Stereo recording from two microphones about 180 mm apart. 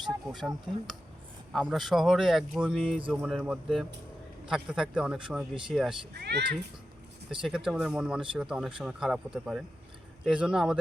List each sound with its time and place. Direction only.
0.3 s speech: centre (ahead or behind)
6.1 s speech: 65° right (ahead or behind)
7.3 s speech: 5° right (ahead or behind)